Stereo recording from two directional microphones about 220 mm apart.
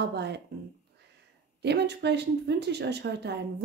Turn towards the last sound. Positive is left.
turn(degrees=-50)  # may be behind; listen again after turning